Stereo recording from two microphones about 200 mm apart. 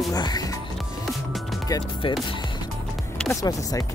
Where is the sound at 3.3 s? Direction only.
15° left (ahead or behind).